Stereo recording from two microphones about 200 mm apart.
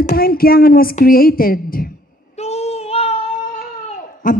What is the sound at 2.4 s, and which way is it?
Child singing, 30° left (ahead or behind).